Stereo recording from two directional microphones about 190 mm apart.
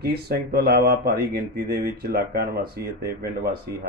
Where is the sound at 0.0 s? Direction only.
55° right (ahead or behind).